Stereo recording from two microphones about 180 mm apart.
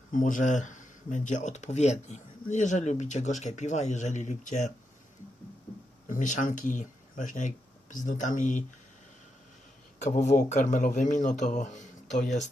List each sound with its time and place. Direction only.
0.1 s speech: 45° left (ahead or behind)
6.1 s speech: 45° left (ahead or behind)
10.0 s speech: 40° left (ahead or behind)